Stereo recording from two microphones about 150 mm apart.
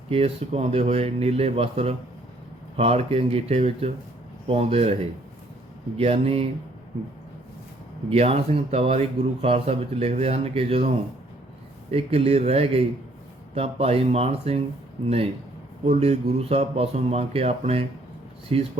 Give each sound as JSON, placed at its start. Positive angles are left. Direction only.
{"t": 0.1, "sound": "speech", "side_deg": -40}
{"t": 6.0, "sound": "speech", "side_deg": -40}
{"t": 8.1, "sound": "speech", "side_deg": -45}